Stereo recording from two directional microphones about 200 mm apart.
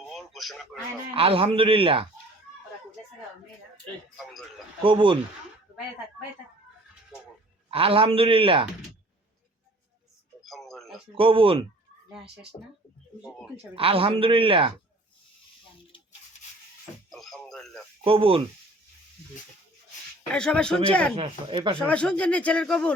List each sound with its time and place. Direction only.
0.1 s speech: centre (ahead or behind)
1.1 s speech: 30° right (ahead or behind)
4.8 s speech: 25° right (ahead or behind)
7.7 s speech: 30° right (ahead or behind)
10.4 s speech: centre (ahead or behind)
11.1 s speech: 25° right (ahead or behind)
12.1 s speech: 5° right (ahead or behind)
13.7 s speech: 30° right (ahead or behind)
17.1 s speech: centre (ahead or behind)
18.0 s speech: 25° right (ahead or behind)
20.3 s speech: 5° left (ahead or behind)
21.2 s speech: 25° right (ahead or behind)
21.8 s speech: 5° left (ahead or behind)